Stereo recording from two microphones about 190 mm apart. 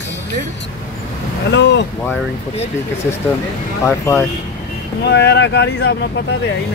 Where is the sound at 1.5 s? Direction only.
65° left (ahead or behind).